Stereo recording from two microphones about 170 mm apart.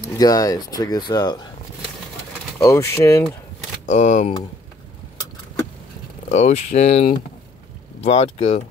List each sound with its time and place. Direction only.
0.2 s speech: 20° left (ahead or behind)
2.6 s speech: 15° left (ahead or behind)
3.9 s speech: 45° left (ahead or behind)
6.2 s speech: 45° left (ahead or behind)